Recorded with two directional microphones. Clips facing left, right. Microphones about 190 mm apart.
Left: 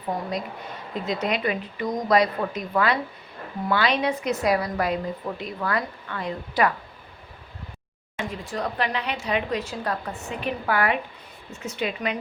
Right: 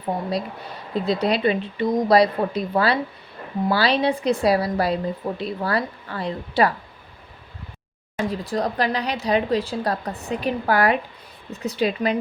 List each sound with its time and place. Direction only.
0.9 s speech: 35° right (ahead or behind)
8.1 s speech: 35° right (ahead or behind)